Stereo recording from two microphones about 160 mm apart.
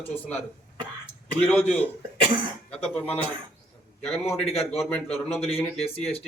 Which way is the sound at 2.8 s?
10° left (ahead or behind).